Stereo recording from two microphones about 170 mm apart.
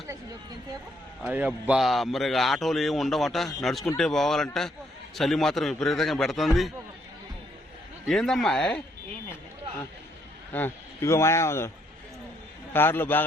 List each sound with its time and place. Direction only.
1.2 s a man's voice: 10° right (ahead or behind)
8.0 s a man's voice: centre (ahead or behind)
10.5 s speech: 15° left (ahead or behind)
12.7 s speech: 10° left (ahead or behind)